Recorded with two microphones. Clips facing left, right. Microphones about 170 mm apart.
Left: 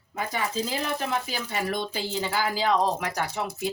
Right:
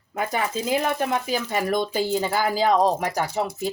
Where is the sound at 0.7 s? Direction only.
50° right (ahead or behind).